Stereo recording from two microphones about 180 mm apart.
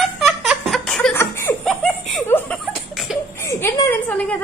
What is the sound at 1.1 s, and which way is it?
Laughter, 15° left (ahead or behind).